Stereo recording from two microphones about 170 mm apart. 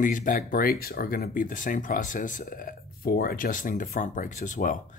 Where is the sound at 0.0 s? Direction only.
50° left (ahead or behind).